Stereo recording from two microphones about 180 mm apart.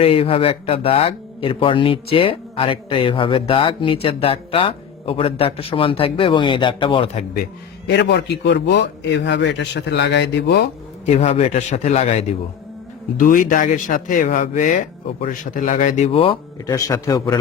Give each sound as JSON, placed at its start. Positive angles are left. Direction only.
{"t": 0.0, "sound": "speech", "side_deg": 30}
{"t": 7.9, "sound": "a man's voice", "side_deg": 70}
{"t": 11.0, "sound": "speech", "side_deg": 40}
{"t": 13.1, "sound": "speech", "side_deg": 50}